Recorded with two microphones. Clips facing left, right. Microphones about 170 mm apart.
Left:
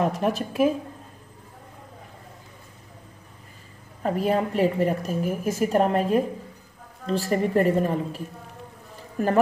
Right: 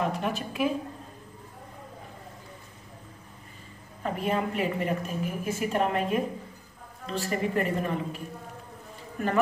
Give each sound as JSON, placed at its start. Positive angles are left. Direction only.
{"t": 0.1, "sound": "a woman's voice", "side_deg": 40}
{"t": 4.0, "sound": "a woman's voice", "side_deg": 35}
{"t": 9.2, "sound": "a woman's voice", "side_deg": 35}